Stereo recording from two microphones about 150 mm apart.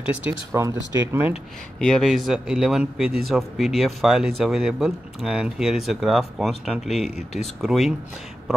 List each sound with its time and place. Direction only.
0.0 s speech: 10° right (ahead or behind)
0.5 s speech: 20° right (ahead or behind)
1.8 s speech: 5° left (ahead or behind)
7.1 s speech: 90° right
7.6 s speech: centre (ahead or behind)